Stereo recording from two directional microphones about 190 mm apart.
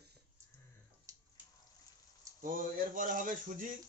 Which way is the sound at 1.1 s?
15° right (ahead or behind).